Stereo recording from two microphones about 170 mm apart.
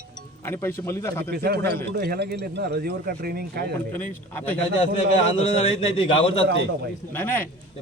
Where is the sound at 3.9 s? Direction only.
10° left (ahead or behind).